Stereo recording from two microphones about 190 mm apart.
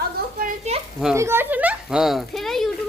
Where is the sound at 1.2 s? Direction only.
15° right (ahead or behind).